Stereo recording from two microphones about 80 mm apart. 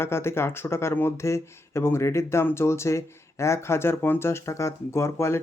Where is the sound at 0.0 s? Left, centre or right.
Left.